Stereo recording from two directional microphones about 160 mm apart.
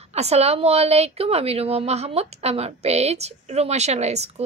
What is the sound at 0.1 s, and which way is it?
Speech, 40° right (ahead or behind).